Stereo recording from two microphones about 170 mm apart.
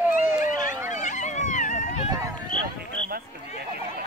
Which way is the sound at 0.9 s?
45° left (ahead or behind).